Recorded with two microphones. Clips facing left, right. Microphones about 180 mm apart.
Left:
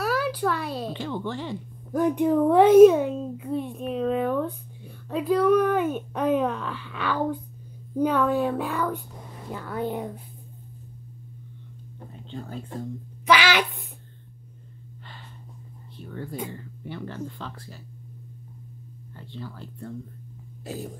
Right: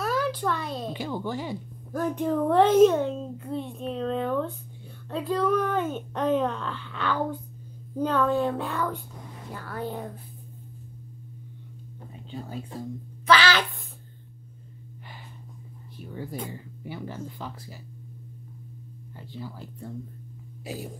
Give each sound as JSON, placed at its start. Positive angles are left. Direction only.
{"t": 0.0, "sound": "a sound", "side_deg": 5}
{"t": 0.9, "sound": "speech", "side_deg": -10}
{"t": 1.9, "sound": "a child's voice", "side_deg": 15}
{"t": 9.5, "sound": "a child's voice", "side_deg": 20}
{"t": 12.3, "sound": "speech", "side_deg": -5}
{"t": 13.2, "sound": "a sound", "side_deg": 15}
{"t": 16.0, "sound": "speech", "side_deg": -10}
{"t": 19.3, "sound": "speech", "side_deg": -10}